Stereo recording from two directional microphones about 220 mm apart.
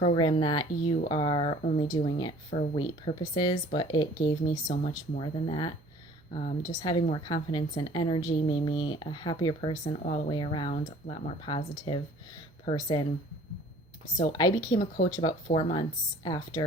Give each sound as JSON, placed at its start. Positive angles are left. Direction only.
{"t": 0.0, "sound": "a woman's voice", "side_deg": 20}
{"t": 4.7, "sound": "speech", "side_deg": 40}
{"t": 5.2, "sound": "a woman's voice", "side_deg": 20}
{"t": 6.3, "sound": "speech", "side_deg": 35}
{"t": 6.8, "sound": "a woman's voice", "side_deg": 20}
{"t": 10.7, "sound": "speech", "side_deg": 35}
{"t": 11.4, "sound": "a woman's voice", "side_deg": 25}
{"t": 14.2, "sound": "a woman's voice", "side_deg": 20}